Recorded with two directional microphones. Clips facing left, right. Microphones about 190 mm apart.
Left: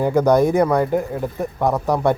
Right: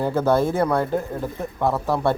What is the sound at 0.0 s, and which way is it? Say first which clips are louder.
Speech: left 4 dB; 15° left (ahead or behind).